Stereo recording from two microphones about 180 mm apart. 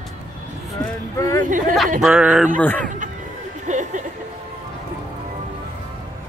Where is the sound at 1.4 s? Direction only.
45° right (ahead or behind).